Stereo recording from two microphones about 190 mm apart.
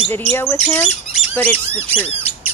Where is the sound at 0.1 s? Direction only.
15° left (ahead or behind).